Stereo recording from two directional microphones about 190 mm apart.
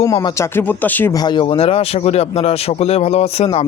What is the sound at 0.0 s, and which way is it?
Speech, 15° left (ahead or behind).